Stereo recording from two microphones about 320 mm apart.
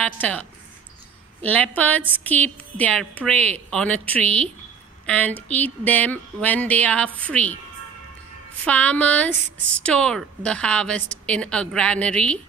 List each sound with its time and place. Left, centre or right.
0.0 s a woman's voice: centre
8.6 s a woman's voice: centre